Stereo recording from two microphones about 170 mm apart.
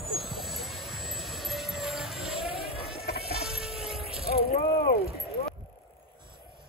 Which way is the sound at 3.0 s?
65° left (ahead or behind).